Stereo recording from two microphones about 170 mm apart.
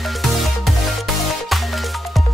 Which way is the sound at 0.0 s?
Centre (ahead or behind).